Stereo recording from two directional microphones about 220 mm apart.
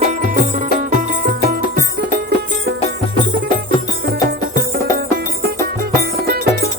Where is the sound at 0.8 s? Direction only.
40° right (ahead or behind).